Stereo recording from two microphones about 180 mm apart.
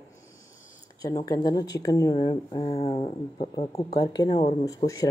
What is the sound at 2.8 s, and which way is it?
Speech, 35° left (ahead or behind).